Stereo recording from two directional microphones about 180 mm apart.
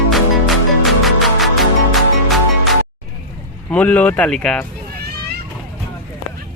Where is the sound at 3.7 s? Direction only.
10° left (ahead or behind).